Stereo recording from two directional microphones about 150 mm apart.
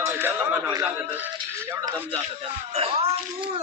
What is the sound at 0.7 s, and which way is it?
Speech, 20° right (ahead or behind).